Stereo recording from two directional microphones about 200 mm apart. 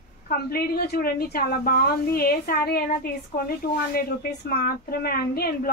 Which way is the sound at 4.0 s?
50° left (ahead or behind).